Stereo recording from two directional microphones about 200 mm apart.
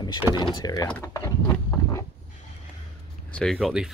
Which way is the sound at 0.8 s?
10° left (ahead or behind).